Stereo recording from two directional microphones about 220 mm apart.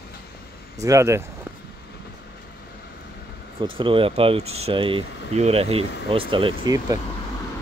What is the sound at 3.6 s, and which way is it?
Speech, 25° right (ahead or behind).